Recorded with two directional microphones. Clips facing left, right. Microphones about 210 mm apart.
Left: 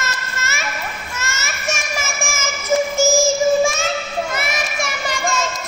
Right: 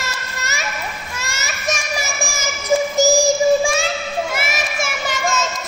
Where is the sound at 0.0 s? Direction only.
15° right (ahead or behind).